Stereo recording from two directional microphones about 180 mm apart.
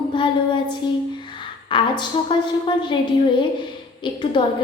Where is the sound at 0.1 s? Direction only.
25° left (ahead or behind).